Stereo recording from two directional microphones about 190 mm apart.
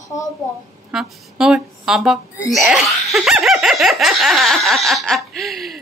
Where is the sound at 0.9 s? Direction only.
5° right (ahead or behind).